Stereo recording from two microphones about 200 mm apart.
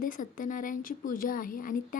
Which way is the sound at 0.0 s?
45° left (ahead or behind).